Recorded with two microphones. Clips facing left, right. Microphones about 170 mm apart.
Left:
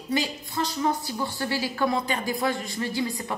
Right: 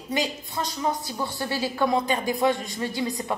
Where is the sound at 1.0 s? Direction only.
20° right (ahead or behind).